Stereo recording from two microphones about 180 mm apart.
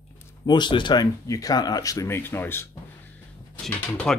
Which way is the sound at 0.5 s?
25° left (ahead or behind).